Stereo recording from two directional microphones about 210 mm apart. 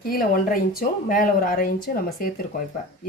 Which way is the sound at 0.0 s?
45° left (ahead or behind).